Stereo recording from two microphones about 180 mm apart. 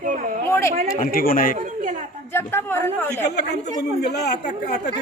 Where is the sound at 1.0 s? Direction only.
55° left (ahead or behind).